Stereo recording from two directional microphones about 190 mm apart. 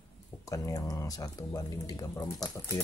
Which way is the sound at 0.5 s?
15° left (ahead or behind).